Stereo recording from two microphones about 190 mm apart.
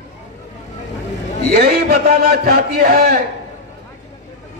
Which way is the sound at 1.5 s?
55° right (ahead or behind).